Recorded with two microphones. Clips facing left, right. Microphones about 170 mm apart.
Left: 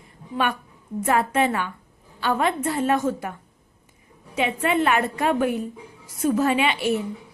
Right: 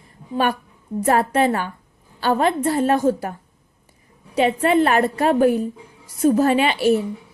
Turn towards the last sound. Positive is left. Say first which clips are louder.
# right 4 dB
turn(degrees=-40)  # may be behind; listen again after turning